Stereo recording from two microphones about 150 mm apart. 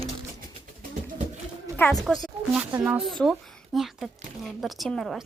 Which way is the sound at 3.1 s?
Centre (ahead or behind).